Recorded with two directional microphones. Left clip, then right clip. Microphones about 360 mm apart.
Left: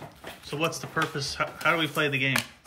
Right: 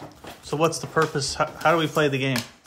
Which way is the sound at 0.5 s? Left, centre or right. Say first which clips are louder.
Right 6 dB; centre.